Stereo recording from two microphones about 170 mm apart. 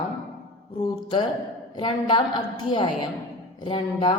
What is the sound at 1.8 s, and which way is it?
A man's voice, 25° left (ahead or behind).